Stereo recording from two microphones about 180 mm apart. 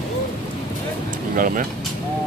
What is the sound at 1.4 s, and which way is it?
Speech, 50° right (ahead or behind).